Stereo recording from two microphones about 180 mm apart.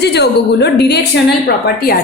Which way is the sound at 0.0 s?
70° left (ahead or behind).